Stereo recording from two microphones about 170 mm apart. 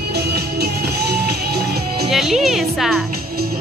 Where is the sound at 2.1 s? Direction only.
Centre (ahead or behind).